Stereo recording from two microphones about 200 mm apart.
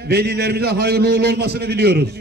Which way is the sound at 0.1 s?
55° right (ahead or behind).